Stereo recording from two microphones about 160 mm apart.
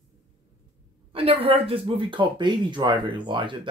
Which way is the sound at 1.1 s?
35° right (ahead or behind).